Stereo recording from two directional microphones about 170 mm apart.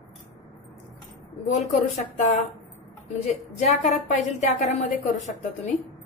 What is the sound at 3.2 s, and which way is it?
A woman's voice, 40° left (ahead or behind).